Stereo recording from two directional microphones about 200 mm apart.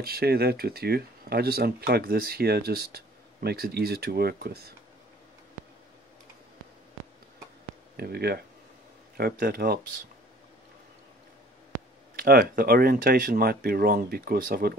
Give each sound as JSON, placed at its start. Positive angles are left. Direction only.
{"t": 0.0, "sound": "speech", "side_deg": -50}
{"t": 8.0, "sound": "speech", "side_deg": -50}
{"t": 12.2, "sound": "speech", "side_deg": -50}